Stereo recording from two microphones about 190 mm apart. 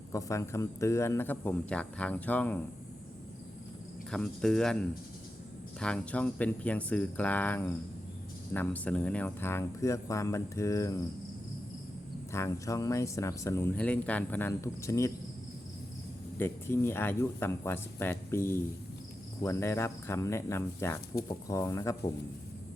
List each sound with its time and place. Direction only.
0.1 s speech: 15° left (ahead or behind)
4.1 s speech: 5° left (ahead or behind)
12.3 s speech: 15° left (ahead or behind)
16.4 s speech: 10° left (ahead or behind)